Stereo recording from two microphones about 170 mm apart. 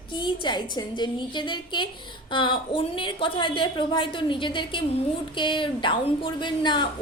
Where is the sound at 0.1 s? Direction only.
25° left (ahead or behind).